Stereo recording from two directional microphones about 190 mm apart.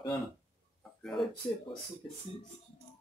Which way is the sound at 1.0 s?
Centre (ahead or behind).